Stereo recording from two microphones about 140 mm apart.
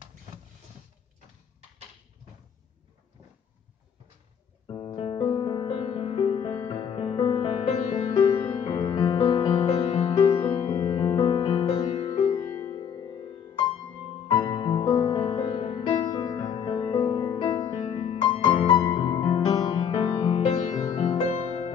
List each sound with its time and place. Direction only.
4.6 s music: 35° left (ahead or behind)
10.7 s music: 25° left (ahead or behind); by 12.5 s 45° left (ahead or behind)
12.7 s music: 30° left (ahead or behind)
21.3 s music: 50° left (ahead or behind)